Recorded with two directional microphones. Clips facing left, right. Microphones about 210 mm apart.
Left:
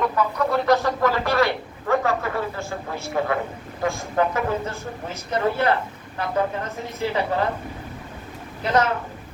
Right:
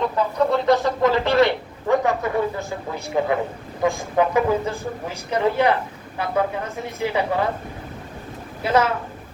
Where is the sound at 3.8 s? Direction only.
15° right (ahead or behind).